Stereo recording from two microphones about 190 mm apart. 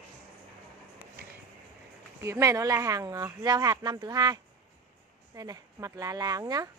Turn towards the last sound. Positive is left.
turn(degrees=-20)  # may be behind; listen again after turning